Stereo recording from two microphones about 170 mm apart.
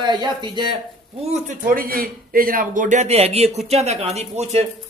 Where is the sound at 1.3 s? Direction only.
50° right (ahead or behind).